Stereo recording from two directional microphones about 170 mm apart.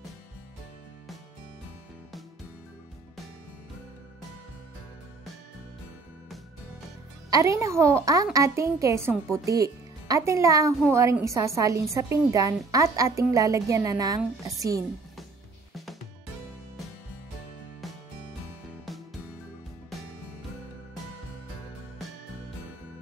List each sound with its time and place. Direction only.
7.2 s a woman's voice: 20° right (ahead or behind)
15.7 s music: centre (ahead or behind)
18.9 s music: centre (ahead or behind)